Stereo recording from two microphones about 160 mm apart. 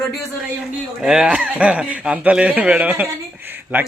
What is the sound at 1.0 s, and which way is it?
A man's voice, 5° right (ahead or behind).